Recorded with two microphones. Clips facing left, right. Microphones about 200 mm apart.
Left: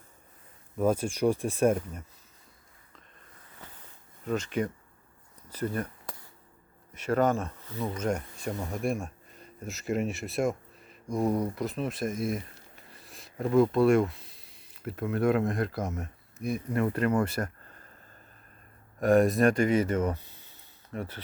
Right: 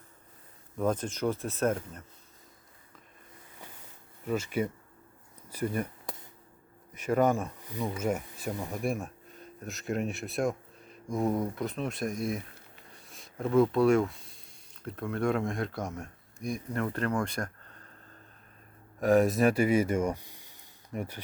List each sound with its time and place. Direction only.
0.8 s speech: 10° left (ahead or behind)
3.6 s a sound: 10° right (ahead or behind)
4.3 s speech: 10° right (ahead or behind)
5.5 s a sound: 10° right (ahead or behind)
6.9 s speech: 10° right (ahead or behind); by 17.8 s 5° left (ahead or behind)
18.9 s speech: centre (ahead or behind)